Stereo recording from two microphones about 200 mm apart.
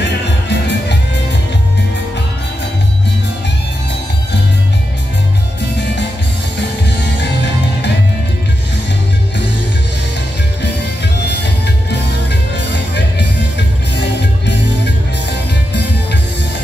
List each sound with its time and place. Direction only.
0.5 s music: 60° left (ahead or behind)
11.2 s music: 60° left (ahead or behind)